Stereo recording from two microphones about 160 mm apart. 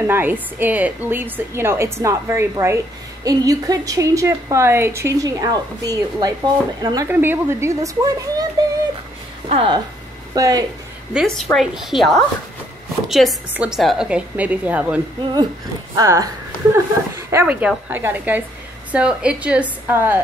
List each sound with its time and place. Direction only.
0.0 s a woman's voice: 10° right (ahead or behind)
7.1 s a woman's voice: 15° right (ahead or behind)
9.5 s speech: 35° right (ahead or behind)
10.3 s a woman's voice: 25° right (ahead or behind)
11.1 s a woman's voice: 5° right (ahead or behind)
16.0 s a woman's voice: 20° right (ahead or behind)